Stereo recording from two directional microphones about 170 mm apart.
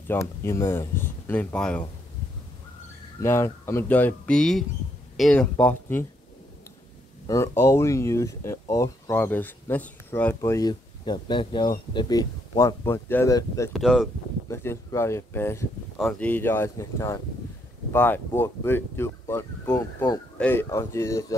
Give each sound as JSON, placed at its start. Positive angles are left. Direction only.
{"t": 0.1, "sound": "speech", "side_deg": 15}
{"t": 3.2, "sound": "speech", "side_deg": 15}
{"t": 7.2, "sound": "speech", "side_deg": 15}
{"t": 13.7, "sound": "speech", "side_deg": 0}
{"t": 14.5, "sound": "speech", "side_deg": 15}